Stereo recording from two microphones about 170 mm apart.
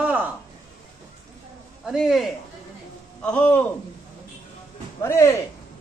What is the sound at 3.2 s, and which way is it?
Speech, 10° left (ahead or behind).